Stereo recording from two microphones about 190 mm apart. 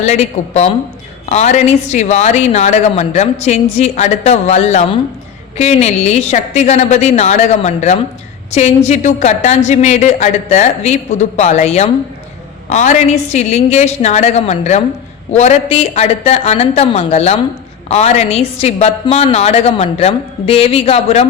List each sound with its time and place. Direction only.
0.0 s a woman's voice: 35° left (ahead or behind)